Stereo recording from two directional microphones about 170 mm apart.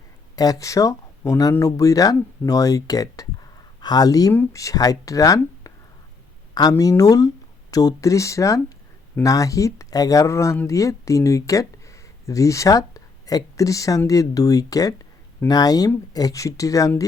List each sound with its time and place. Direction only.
0.3 s speech: 20° left (ahead or behind)